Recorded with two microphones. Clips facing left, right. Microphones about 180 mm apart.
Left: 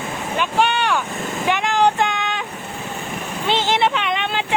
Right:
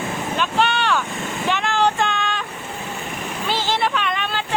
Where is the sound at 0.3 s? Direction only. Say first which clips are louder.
Left 2 dB; 15° left (ahead or behind).